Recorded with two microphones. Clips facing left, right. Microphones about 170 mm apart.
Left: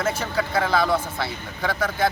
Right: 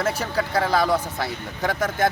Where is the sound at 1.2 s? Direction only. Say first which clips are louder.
Right 1 dB; 45° right (ahead or behind).